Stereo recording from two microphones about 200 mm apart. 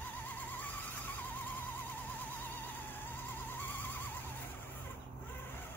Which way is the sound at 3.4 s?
10° left (ahead or behind).